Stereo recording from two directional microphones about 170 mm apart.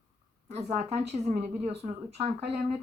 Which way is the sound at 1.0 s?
40° right (ahead or behind).